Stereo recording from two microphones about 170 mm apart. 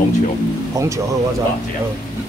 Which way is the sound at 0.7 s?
20° right (ahead or behind).